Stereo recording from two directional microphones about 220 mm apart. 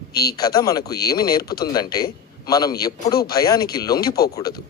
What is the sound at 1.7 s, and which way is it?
A man's voice, 15° left (ahead or behind).